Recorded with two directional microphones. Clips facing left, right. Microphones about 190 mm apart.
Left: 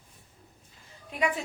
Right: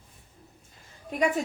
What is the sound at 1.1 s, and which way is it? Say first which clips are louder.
Speech: right 4 dB; 45° right (ahead or behind).